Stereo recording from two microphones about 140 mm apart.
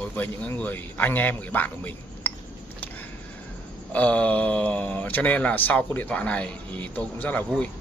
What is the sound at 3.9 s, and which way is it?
Speech, 10° left (ahead or behind).